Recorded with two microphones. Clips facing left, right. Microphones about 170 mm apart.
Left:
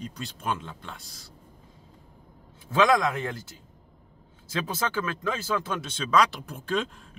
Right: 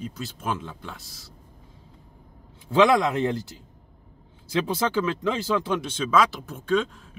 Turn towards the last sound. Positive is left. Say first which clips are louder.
# right 5 dB
turn(degrees=0)  # may be behind; listen again after turning